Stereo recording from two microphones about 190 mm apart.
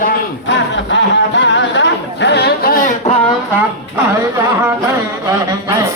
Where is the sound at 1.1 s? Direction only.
70° left (ahead or behind); by 3.1 s 45° left (ahead or behind).